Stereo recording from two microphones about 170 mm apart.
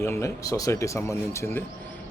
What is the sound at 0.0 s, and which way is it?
Speech, 15° left (ahead or behind).